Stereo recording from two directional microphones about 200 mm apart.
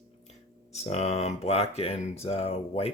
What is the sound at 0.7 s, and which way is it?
Speech, 30° left (ahead or behind).